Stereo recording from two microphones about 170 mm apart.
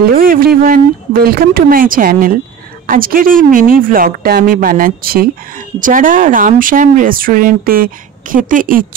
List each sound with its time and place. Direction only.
0.1 s speech: 55° right (ahead or behind)